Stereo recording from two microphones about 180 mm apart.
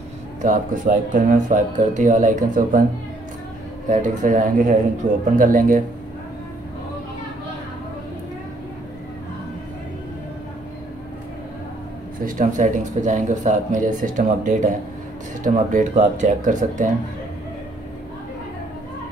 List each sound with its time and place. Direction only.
0.4 s speech: 45° right (ahead or behind)
3.9 s speech: 45° right (ahead or behind)
12.3 s speech: 45° right (ahead or behind)